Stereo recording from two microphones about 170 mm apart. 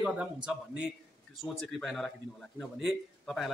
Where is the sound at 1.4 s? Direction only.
Centre (ahead or behind).